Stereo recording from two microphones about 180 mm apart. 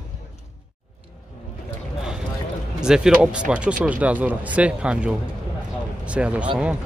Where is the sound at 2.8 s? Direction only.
5° right (ahead or behind).